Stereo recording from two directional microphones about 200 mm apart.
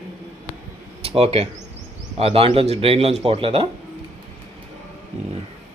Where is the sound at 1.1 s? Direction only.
30° right (ahead or behind).